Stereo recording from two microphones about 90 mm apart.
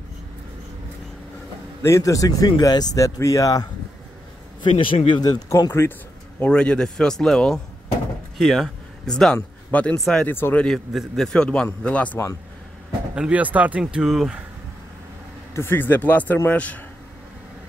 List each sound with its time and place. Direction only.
1.8 s speech: 35° left (ahead or behind)
4.6 s speech: 70° left (ahead or behind)
5.2 s speech: 50° left (ahead or behind)
5.7 s speech: 25° left (ahead or behind)
6.4 s a man's voice: 10° left (ahead or behind)
10.6 s a man's voice: centre (ahead or behind)
13.1 s speech: 15° right (ahead or behind)
15.5 s speech: 25° left (ahead or behind)